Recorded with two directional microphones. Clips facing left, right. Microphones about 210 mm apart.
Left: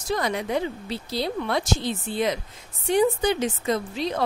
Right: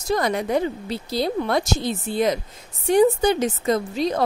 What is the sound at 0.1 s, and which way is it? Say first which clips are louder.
Speech: right 4 dB; 45° right (ahead or behind).